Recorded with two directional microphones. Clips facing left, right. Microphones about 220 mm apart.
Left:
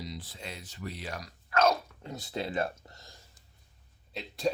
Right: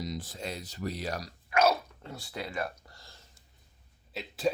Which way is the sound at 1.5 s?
10° right (ahead or behind).